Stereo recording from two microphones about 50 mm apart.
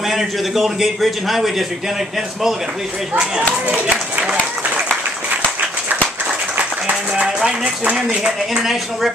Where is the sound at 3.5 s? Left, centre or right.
Right.